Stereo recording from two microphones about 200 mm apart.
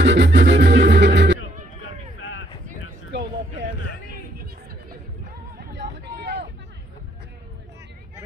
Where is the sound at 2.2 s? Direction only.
75° left (ahead or behind).